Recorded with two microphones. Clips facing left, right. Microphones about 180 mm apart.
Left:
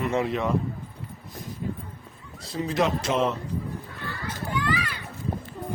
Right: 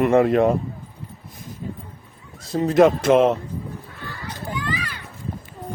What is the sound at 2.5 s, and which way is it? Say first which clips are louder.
Speech: right 10 dB; 45° right (ahead or behind).